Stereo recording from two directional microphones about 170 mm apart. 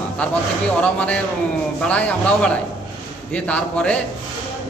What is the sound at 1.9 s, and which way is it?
A man's voice, 5° left (ahead or behind).